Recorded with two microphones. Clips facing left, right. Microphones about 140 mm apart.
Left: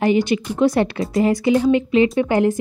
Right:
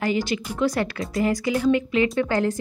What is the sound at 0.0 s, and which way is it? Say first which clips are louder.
Speech: left 7 dB; 20° left (ahead or behind).